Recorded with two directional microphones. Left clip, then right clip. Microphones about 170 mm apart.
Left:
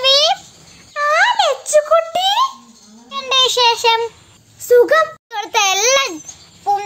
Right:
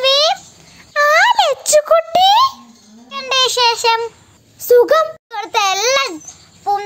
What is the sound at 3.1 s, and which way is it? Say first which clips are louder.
Child singing: left 1 dB; 5° right (ahead or behind).